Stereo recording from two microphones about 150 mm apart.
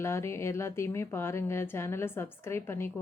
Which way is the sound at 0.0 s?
15° left (ahead or behind).